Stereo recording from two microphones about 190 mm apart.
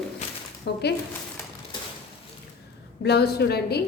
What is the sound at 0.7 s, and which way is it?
Speech, 60° left (ahead or behind).